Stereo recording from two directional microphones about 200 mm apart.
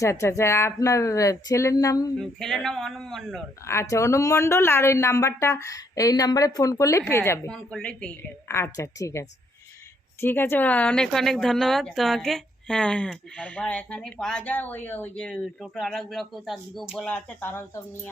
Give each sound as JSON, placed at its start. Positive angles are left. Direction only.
{"t": 0.0, "sound": "speech", "side_deg": 15}
{"t": 2.1, "sound": "speech", "side_deg": 0}
{"t": 3.7, "sound": "speech", "side_deg": 15}